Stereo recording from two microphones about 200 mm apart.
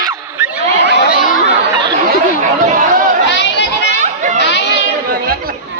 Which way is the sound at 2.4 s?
40° right (ahead or behind).